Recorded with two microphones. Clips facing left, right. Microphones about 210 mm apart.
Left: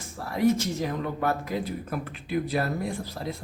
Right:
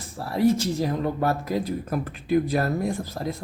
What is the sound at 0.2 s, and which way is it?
Speech, 30° right (ahead or behind).